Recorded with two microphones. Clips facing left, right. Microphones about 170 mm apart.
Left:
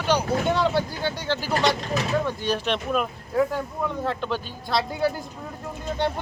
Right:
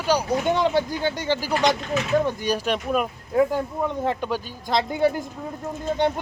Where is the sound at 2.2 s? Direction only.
10° right (ahead or behind).